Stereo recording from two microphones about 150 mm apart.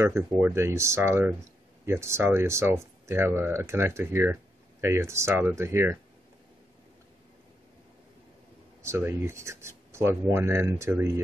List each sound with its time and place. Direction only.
0.0 s speech: 15° right (ahead or behind)
8.8 s speech: 15° right (ahead or behind)